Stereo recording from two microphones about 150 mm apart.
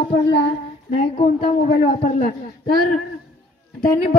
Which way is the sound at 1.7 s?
90° left.